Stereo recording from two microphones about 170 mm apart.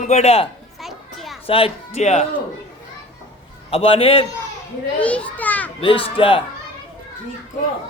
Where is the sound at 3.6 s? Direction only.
35° left (ahead or behind).